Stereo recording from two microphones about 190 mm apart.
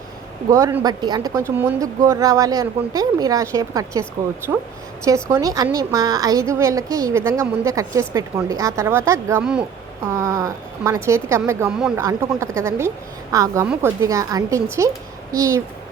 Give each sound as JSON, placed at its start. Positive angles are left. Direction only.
{"t": 0.5, "sound": "a woman's voice", "side_deg": -15}
{"t": 5.0, "sound": "a woman's voice", "side_deg": -15}
{"t": 9.4, "sound": "speech", "side_deg": -5}
{"t": 10.1, "sound": "a woman's voice", "side_deg": -15}